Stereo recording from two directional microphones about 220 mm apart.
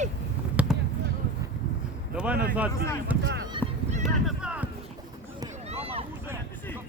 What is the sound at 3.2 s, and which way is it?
Speech, 50° right (ahead or behind).